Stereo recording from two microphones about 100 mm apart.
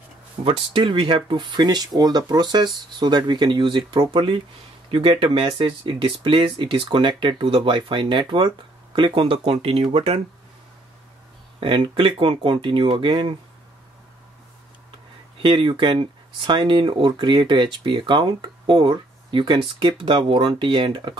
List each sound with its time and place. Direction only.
0.4 s speech: 65° right (ahead or behind)
4.9 s speech: 65° right (ahead or behind)
9.9 s speech: 90° right
11.6 s speech: 60° right (ahead or behind)
15.4 s speech: 60° right (ahead or behind)